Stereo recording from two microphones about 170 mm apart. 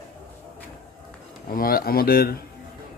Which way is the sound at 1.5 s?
60° left (ahead or behind).